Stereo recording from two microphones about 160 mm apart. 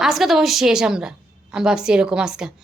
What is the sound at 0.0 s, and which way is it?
A woman's voice, centre (ahead or behind).